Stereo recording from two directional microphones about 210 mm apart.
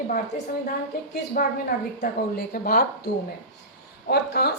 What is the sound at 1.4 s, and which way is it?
Speech, 45° left (ahead or behind).